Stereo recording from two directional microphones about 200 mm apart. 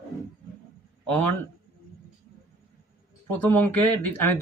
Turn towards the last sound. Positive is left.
turn(degrees=10)  # may be behind; listen again after turning